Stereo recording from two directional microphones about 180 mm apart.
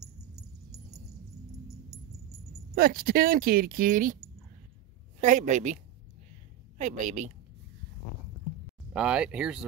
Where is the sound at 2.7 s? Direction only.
55° right (ahead or behind).